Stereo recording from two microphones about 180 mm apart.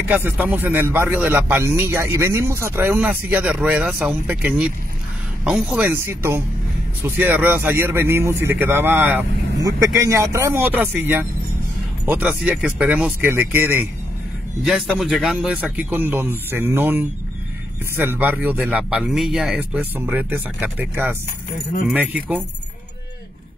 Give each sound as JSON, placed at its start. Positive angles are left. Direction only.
{"t": 0.1, "sound": "speech", "side_deg": -10}